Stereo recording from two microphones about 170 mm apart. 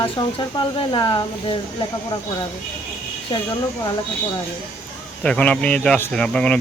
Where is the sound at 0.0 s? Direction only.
30° left (ahead or behind).